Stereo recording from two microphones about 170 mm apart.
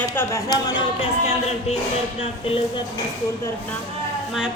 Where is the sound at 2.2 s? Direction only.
35° left (ahead or behind).